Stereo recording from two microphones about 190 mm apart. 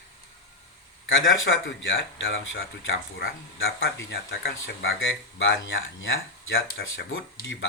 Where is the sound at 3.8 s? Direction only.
55° left (ahead or behind); by 4.9 s 75° left (ahead or behind).